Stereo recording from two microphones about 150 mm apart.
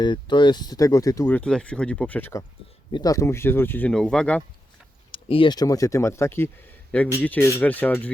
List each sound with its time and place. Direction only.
0.0 s speech: 30° left (ahead or behind)
1.3 s speech: 5° left (ahead or behind)
2.9 s speech: 25° left (ahead or behind); by 4.4 s 5° left (ahead or behind)
5.1 s speech: 35° left (ahead or behind); by 8.1 s 10° left (ahead or behind)